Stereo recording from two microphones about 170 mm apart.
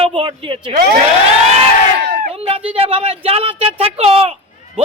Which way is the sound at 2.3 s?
35° right (ahead or behind).